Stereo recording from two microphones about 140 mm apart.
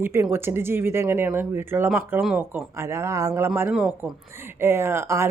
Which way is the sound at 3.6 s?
10° right (ahead or behind).